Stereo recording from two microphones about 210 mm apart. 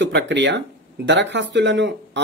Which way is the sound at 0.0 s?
55° right (ahead or behind).